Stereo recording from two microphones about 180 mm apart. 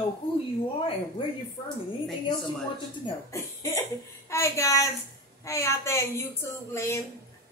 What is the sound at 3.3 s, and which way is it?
A woman's voice, 15° left (ahead or behind).